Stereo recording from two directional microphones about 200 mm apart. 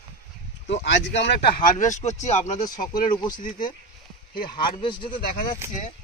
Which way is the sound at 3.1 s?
20° left (ahead or behind).